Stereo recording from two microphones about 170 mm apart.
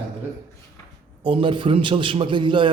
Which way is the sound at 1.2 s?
30° right (ahead or behind).